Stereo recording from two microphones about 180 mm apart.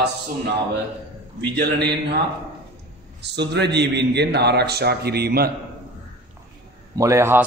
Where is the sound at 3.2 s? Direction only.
70° right (ahead or behind).